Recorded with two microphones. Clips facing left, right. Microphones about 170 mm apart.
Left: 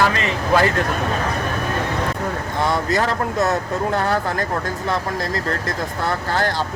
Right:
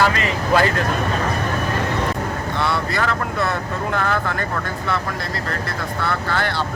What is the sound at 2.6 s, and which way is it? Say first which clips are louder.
Speech: left 3 dB; 45° left (ahead or behind).